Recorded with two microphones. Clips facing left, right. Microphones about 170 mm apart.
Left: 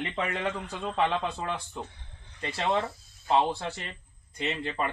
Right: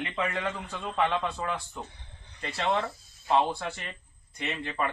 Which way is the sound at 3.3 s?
25° left (ahead or behind).